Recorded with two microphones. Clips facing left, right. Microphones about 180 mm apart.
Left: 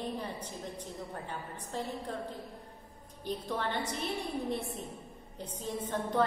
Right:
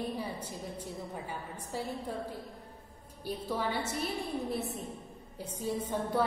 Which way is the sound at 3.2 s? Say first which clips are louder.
Right 1 dB; 10° right (ahead or behind).